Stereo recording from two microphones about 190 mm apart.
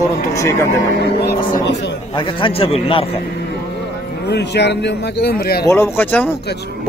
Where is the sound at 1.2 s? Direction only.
45° left (ahead or behind).